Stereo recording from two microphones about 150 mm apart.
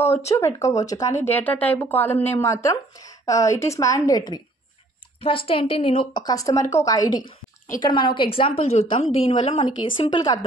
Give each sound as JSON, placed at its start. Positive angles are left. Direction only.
{"t": 0.0, "sound": "a woman's voice", "side_deg": 15}
{"t": 6.2, "sound": "a woman's voice", "side_deg": 25}